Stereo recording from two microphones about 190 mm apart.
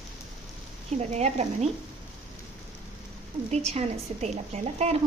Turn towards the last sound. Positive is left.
turn(degrees=-35)  # may be behind; listen again after turning